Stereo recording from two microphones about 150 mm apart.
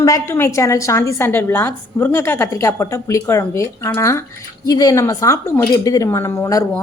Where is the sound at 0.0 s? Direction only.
20° left (ahead or behind).